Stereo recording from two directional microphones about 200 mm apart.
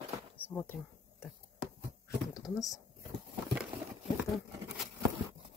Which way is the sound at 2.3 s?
20° left (ahead or behind).